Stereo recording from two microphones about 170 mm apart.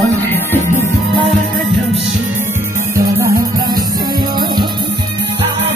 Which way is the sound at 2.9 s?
20° right (ahead or behind).